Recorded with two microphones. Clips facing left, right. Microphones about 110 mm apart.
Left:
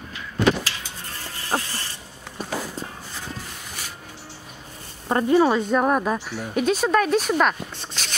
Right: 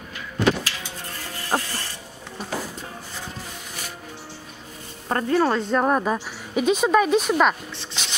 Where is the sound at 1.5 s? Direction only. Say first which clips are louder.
Right 1 dB; 5° right (ahead or behind).